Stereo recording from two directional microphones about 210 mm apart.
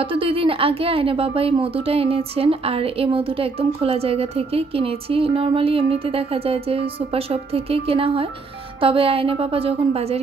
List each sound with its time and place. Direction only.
0.0 s a woman's voice: 25° right (ahead or behind)